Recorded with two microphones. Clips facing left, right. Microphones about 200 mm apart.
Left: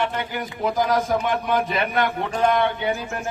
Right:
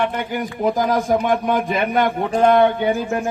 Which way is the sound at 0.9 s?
45° right (ahead or behind).